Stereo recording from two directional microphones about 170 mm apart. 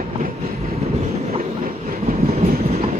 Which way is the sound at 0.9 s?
40° right (ahead or behind).